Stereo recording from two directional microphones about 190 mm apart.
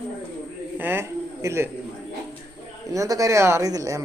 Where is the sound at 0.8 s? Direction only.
10° right (ahead or behind).